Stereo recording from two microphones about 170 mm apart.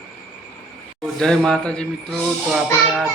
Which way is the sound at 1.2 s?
5° left (ahead or behind).